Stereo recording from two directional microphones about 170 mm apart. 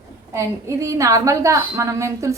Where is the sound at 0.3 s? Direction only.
20° right (ahead or behind).